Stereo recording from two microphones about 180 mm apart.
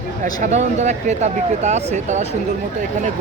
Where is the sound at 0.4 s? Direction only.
40° right (ahead or behind).